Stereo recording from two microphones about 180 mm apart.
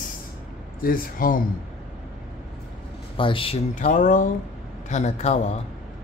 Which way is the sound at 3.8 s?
45° left (ahead or behind).